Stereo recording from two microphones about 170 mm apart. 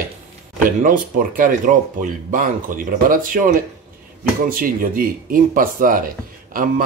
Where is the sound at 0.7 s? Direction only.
55° right (ahead or behind).